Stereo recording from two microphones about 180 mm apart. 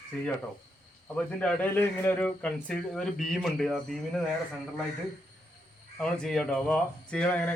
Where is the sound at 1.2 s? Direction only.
10° left (ahead or behind).